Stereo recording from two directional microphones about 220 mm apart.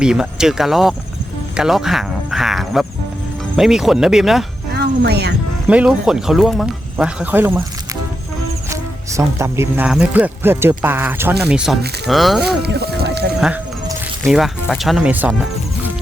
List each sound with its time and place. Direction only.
0.0 s speech: 5° right (ahead or behind)
4.7 s a sound: 45° right (ahead or behind)
5.6 s speech: 5° right (ahead or behind)
8.7 s speech: 15° right (ahead or behind)
12.6 s a sound: 45° right (ahead or behind)
14.3 s speech: centre (ahead or behind)